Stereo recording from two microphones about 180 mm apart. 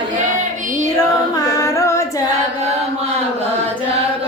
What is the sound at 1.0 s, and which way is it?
Female singing, 20° left (ahead or behind).